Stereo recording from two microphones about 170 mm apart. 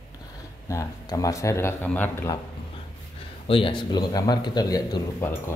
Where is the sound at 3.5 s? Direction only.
30° left (ahead or behind).